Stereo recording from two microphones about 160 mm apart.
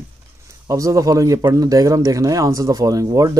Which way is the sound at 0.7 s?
20° right (ahead or behind).